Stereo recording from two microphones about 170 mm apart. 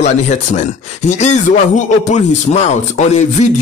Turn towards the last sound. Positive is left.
turn(degrees=40)  # may be behind; listen again after turning